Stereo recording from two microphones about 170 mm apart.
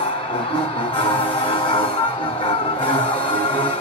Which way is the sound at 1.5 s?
30° left (ahead or behind).